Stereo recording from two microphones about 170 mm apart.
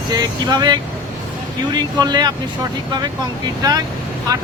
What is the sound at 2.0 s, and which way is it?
Speech, 25° right (ahead or behind).